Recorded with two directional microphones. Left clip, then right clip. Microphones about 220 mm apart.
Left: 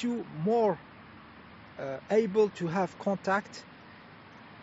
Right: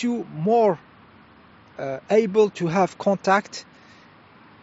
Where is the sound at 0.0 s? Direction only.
45° right (ahead or behind).